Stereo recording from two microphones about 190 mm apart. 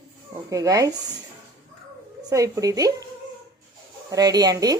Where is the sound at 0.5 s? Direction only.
15° right (ahead or behind).